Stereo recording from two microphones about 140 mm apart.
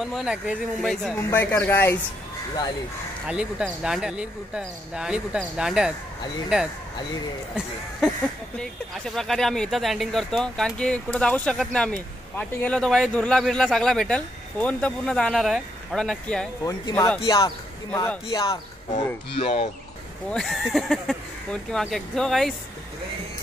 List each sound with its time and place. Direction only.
0.0 s speech: 5° right (ahead or behind)
1.3 s speech: 15° left (ahead or behind)
3.3 s speech: 5° right (ahead or behind)
8.5 s speech: 5° left (ahead or behind)
16.6 s speech: 20° left (ahead or behind)
19.3 s speech: 40° left (ahead or behind)
20.2 s speech: centre (ahead or behind)